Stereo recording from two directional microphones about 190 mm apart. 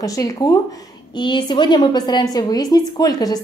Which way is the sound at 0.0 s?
20° left (ahead or behind).